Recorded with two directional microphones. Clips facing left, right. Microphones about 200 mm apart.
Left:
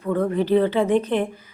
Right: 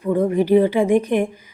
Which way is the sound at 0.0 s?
15° right (ahead or behind).